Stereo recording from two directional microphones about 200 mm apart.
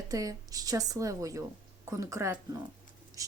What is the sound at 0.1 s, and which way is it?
Speech, 15° right (ahead or behind).